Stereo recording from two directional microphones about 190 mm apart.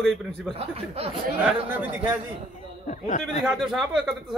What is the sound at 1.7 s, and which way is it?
Speech, 10° right (ahead or behind).